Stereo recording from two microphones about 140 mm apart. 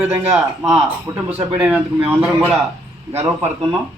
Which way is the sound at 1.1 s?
25° right (ahead or behind).